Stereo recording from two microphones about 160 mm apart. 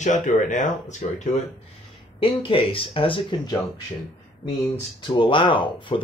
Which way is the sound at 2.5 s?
35° left (ahead or behind).